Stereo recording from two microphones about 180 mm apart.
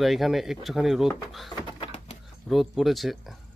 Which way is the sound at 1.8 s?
35° left (ahead or behind).